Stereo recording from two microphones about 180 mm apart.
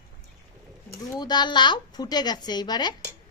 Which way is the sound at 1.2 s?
25° left (ahead or behind).